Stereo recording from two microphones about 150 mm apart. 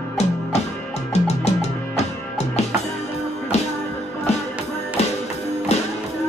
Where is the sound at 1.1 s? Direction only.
45° left (ahead or behind).